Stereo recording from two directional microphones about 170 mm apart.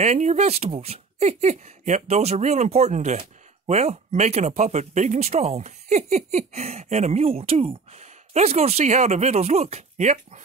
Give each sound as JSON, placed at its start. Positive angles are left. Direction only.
{"t": 0.0, "sound": "speech", "side_deg": -40}